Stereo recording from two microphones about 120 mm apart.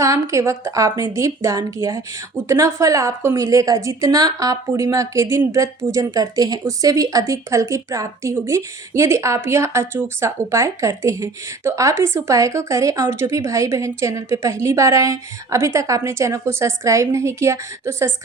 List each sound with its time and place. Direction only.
0.0 s a woman's voice: 25° right (ahead or behind)